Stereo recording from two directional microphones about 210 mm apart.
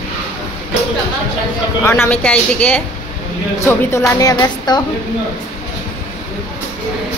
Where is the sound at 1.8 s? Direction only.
10° left (ahead or behind).